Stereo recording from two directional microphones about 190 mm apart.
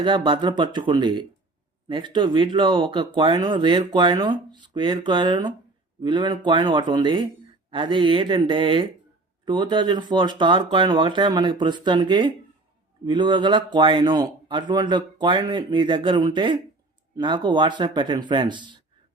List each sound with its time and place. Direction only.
0.0 s speech: 25° right (ahead or behind)